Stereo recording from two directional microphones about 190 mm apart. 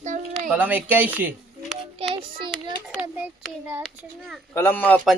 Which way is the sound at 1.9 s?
30° right (ahead or behind).